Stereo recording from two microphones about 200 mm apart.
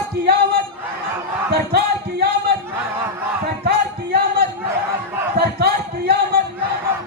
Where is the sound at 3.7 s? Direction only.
50° right (ahead or behind).